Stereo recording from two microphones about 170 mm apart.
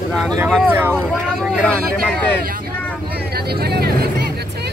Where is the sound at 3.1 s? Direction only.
70° right (ahead or behind).